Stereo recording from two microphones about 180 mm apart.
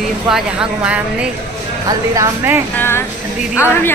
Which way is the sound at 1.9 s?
15° right (ahead or behind).